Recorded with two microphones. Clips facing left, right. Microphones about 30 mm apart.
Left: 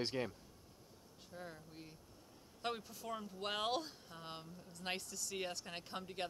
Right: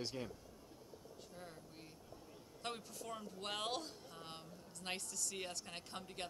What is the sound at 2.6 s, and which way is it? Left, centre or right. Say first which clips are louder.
Speech: left 4 dB; centre.